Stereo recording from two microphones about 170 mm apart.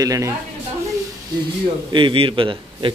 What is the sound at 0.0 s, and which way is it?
Speech, 20° right (ahead or behind).